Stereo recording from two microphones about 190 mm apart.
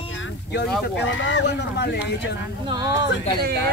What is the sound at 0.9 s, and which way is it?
Speech, 75° left (ahead or behind).